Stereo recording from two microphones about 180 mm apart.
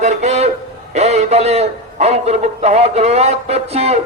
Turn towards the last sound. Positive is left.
turn(degrees=-35)  # may be behind; listen again after turning